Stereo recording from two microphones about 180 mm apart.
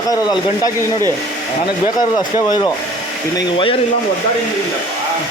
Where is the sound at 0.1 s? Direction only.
20° left (ahead or behind).